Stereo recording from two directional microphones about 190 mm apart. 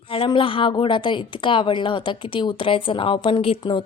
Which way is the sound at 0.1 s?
25° left (ahead or behind).